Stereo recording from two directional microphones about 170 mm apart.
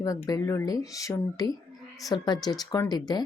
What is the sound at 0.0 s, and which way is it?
Speech, 20° left (ahead or behind).